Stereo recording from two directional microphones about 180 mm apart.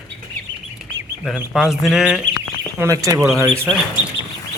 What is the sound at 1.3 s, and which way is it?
Speech, centre (ahead or behind).